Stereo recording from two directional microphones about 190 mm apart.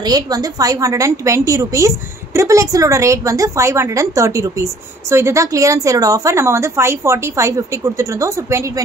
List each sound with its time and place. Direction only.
0.0 s a woman's voice: 20° right (ahead or behind)